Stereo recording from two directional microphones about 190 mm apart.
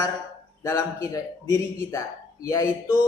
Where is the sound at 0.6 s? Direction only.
15° left (ahead or behind).